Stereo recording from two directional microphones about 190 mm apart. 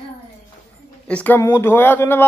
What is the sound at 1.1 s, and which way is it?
Speech, 10° left (ahead or behind).